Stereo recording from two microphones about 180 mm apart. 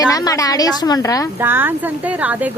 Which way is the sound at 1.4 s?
10° right (ahead or behind).